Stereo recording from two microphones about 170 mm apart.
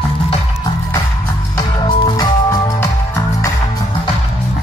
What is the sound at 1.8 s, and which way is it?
Music, 25° left (ahead or behind).